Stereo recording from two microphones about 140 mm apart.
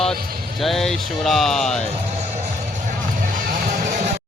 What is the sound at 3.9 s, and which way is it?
Music, 60° right (ahead or behind).